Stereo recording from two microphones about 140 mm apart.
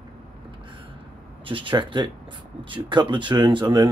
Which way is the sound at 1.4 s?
35° right (ahead or behind).